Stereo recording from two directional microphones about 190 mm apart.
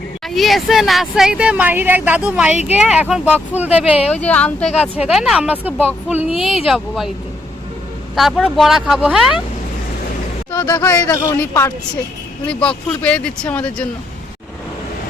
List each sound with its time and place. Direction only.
0.3 s speech: centre (ahead or behind)
4.1 s speech: 5° left (ahead or behind)
8.1 s speech: centre (ahead or behind)
10.5 s speech: 20° left (ahead or behind)